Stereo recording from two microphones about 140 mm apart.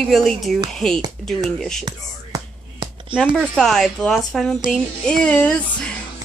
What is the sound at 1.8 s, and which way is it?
Whispering, 30° right (ahead or behind).